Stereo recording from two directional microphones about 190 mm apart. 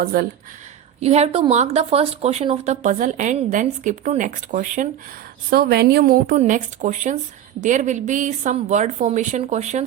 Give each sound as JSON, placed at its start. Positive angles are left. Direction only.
{"t": 0.0, "sound": "speech", "side_deg": -50}
{"t": 0.9, "sound": "a woman's voice", "side_deg": -35}
{"t": 5.5, "sound": "a woman's voice", "side_deg": -55}